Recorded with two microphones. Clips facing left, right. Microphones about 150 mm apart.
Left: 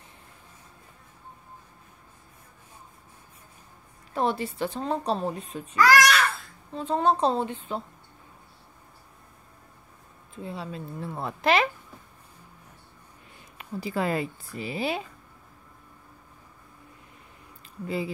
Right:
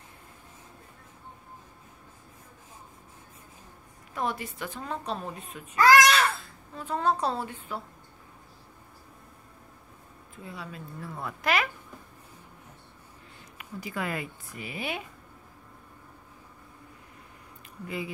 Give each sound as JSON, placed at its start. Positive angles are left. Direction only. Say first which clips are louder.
{"t": 4.1, "sound": "speech", "louder": "left 5 dB", "side_deg": 30}
{"t": 5.8, "sound": "a child's voice", "louder": "even", "side_deg": -25}
{"t": 6.7, "sound": "a woman's voice", "louder": "left 4 dB", "side_deg": 25}
{"t": 10.4, "sound": "a woman's voice", "louder": "left 6 dB", "side_deg": 25}
{"t": 13.6, "sound": "speech", "louder": "left 6 dB", "side_deg": 30}
{"t": 17.8, "sound": "speech", "louder": "left 5 dB", "side_deg": 30}